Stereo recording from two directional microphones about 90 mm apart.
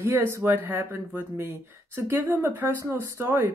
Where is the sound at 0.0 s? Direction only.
30° right (ahead or behind).